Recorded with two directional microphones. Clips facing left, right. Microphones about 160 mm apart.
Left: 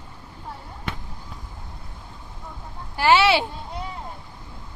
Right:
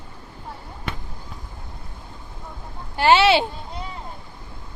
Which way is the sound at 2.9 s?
25° right (ahead or behind).